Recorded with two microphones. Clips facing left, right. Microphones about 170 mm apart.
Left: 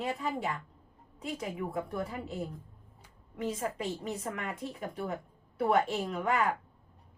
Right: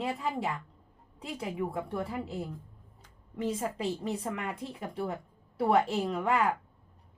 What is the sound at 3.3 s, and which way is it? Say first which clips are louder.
Speech: right 2 dB; 30° right (ahead or behind).